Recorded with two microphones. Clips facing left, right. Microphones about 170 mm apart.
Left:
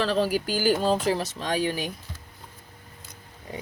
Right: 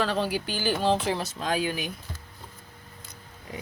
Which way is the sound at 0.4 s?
40° left (ahead or behind).